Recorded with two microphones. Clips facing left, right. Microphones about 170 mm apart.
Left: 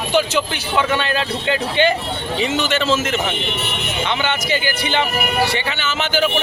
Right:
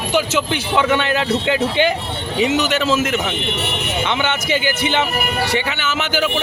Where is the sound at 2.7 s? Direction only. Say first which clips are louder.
Right 1 dB; 5° right (ahead or behind).